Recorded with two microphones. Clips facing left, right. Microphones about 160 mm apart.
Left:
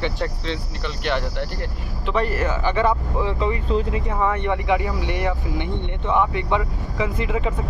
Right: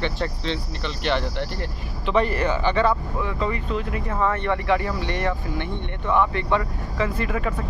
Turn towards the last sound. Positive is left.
turn(degrees=20)  # may be behind; listen again after turning